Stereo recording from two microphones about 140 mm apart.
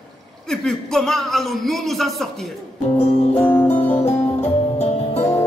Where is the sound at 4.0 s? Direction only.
50° left (ahead or behind).